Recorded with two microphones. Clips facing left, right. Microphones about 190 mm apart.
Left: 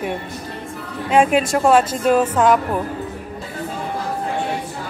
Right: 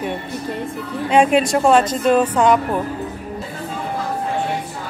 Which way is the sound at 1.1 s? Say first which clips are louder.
Right 1 dB; centre (ahead or behind).